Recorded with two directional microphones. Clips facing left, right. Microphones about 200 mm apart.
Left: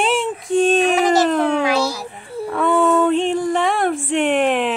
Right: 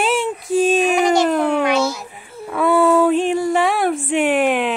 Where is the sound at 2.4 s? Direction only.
5° right (ahead or behind).